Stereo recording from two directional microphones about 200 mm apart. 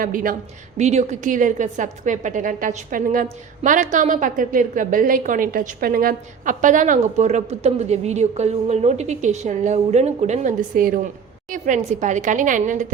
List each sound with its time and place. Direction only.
0.0 s a woman's voice: 45° right (ahead or behind)